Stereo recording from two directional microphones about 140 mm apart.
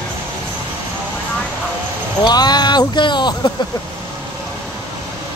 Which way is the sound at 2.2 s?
30° left (ahead or behind).